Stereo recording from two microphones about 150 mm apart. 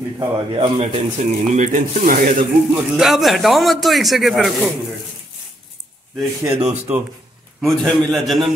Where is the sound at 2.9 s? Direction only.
Centre (ahead or behind).